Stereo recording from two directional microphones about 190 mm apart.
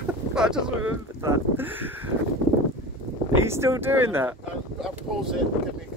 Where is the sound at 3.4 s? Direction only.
15° right (ahead or behind).